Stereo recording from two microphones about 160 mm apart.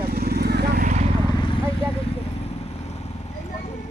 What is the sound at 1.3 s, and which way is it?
Vehicle, 30° left (ahead or behind).